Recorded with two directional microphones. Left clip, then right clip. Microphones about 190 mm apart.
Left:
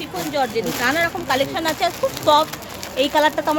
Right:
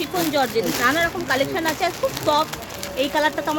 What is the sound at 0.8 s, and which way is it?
Speech, 30° left (ahead or behind).